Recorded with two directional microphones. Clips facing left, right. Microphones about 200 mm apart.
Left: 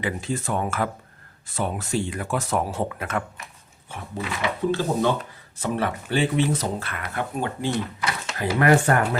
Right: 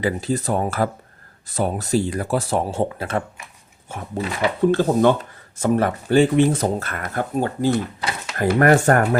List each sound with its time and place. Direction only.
0.0 s speech: 35° right (ahead or behind)
4.7 s speech: 50° right (ahead or behind)